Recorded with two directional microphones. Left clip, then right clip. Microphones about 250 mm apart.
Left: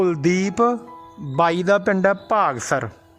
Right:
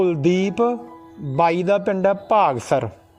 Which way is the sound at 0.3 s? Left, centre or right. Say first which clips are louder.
Right 1 dB; left.